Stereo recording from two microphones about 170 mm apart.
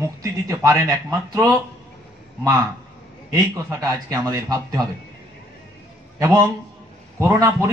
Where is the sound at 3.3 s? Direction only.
20° right (ahead or behind).